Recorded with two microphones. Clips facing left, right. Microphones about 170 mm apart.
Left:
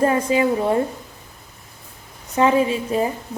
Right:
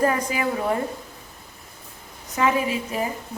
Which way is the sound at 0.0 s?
25° left (ahead or behind).